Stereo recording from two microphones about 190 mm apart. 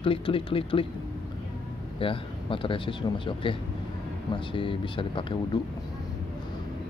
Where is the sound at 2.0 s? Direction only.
30° left (ahead or behind).